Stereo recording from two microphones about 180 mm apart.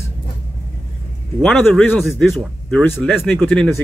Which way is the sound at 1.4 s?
5° left (ahead or behind).